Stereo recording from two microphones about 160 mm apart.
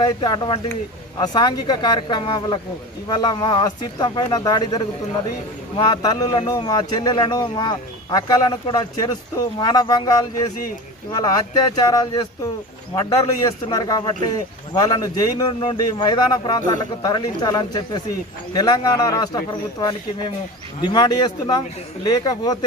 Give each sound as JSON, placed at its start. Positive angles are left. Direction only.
{"t": 0.0, "sound": "a man's voice", "side_deg": 25}